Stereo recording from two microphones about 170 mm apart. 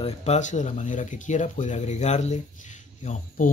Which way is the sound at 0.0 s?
40° left (ahead or behind).